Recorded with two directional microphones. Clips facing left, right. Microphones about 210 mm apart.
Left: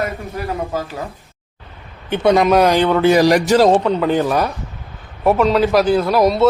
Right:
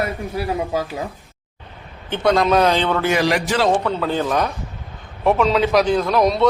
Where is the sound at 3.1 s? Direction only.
40° left (ahead or behind).